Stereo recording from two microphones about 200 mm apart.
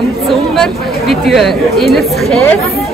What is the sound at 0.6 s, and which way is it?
Speech, centre (ahead or behind).